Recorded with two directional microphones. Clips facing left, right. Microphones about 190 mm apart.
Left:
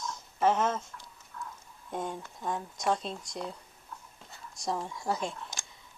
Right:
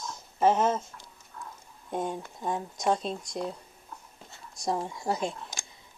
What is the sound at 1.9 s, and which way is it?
Speech, 20° right (ahead or behind).